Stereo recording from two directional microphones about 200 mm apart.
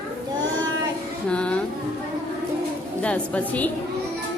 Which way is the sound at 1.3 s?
5° left (ahead or behind).